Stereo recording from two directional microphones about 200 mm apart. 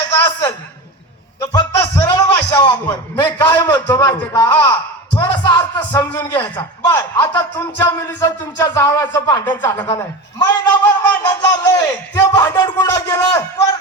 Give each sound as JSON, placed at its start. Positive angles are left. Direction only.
{"t": 0.1, "sound": "a man's voice", "side_deg": 15}
{"t": 1.5, "sound": "a man's voice", "side_deg": 20}
{"t": 3.4, "sound": "a man's voice", "side_deg": 10}